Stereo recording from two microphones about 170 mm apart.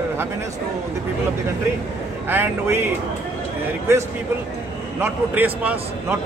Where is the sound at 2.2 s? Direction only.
10° right (ahead or behind).